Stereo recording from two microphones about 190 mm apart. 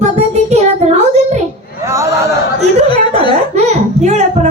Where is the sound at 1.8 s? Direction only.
15° right (ahead or behind).